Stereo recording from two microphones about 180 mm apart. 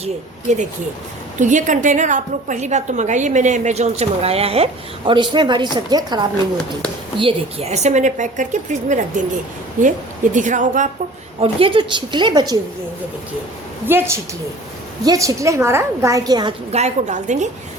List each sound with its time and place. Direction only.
0.0 s a woman's voice: 40° right (ahead or behind); by 6.2 s 25° right (ahead or behind)
7.2 s a woman's voice: 35° right (ahead or behind)
10.3 s a woman's voice: 45° right (ahead or behind)
11.3 s a woman's voice: 30° right (ahead or behind)
13.8 s a woman's voice: 10° right (ahead or behind)
16.7 s a woman's voice: 40° right (ahead or behind)